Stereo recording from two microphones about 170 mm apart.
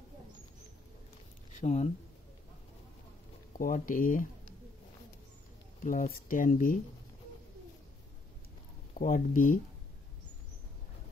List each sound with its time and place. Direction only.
1.6 s speech: 40° left (ahead or behind)
3.5 s speech: 55° left (ahead or behind)
5.9 s speech: 55° left (ahead or behind)
8.9 s speech: 50° left (ahead or behind)